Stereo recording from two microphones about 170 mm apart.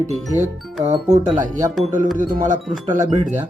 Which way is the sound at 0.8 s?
45° right (ahead or behind).